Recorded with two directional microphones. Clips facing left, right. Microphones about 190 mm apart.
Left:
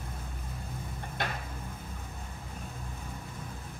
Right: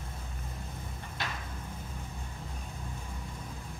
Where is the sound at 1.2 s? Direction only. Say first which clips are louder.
Left 4 dB; 50° left (ahead or behind).